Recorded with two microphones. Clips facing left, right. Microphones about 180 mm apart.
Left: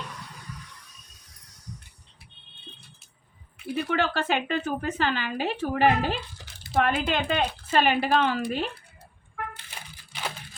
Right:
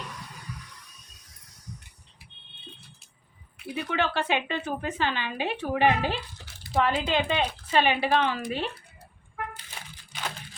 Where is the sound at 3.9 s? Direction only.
45° left (ahead or behind).